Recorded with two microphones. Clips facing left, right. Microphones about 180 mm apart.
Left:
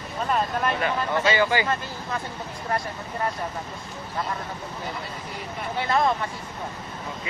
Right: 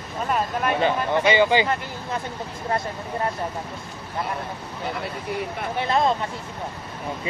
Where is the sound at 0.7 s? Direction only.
20° right (ahead or behind).